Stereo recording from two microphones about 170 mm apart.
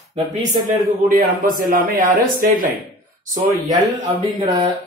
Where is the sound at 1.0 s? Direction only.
55° right (ahead or behind).